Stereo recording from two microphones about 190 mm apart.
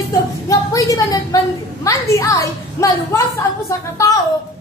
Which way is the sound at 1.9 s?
15° left (ahead or behind).